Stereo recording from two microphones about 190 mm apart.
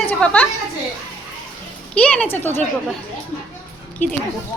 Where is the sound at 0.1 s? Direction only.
5° left (ahead or behind).